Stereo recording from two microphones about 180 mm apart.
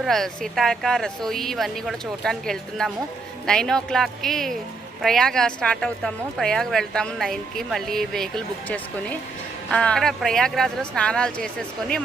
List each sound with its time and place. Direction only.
0.0 s a woman's voice: centre (ahead or behind)